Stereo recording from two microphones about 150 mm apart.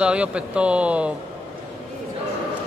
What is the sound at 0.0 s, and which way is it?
Speech, 5° right (ahead or behind).